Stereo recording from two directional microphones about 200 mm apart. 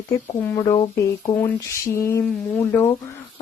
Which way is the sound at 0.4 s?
20° left (ahead or behind).